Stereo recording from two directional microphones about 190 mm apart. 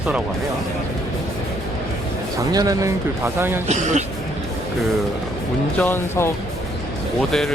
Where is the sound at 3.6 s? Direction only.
40° right (ahead or behind).